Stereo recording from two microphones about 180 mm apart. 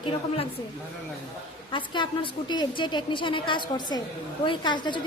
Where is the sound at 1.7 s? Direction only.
25° left (ahead or behind).